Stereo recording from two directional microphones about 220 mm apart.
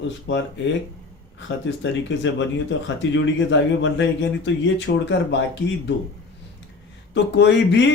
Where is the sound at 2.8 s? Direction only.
55° left (ahead or behind).